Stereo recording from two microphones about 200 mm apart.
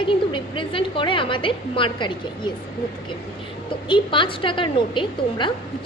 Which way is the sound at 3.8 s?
25° left (ahead or behind).